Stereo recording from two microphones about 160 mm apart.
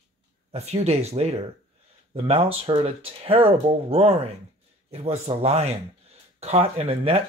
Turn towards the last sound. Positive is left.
turn(degrees=-40)  # may be behind; listen again after turning